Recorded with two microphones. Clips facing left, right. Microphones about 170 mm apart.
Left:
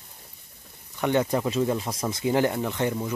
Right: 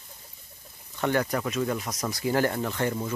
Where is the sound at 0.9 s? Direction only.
20° left (ahead or behind).